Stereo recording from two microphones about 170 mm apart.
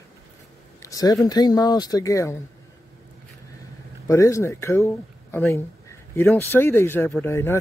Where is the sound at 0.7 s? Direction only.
20° left (ahead or behind).